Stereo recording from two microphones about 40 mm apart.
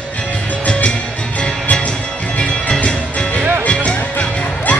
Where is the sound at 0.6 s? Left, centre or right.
Left.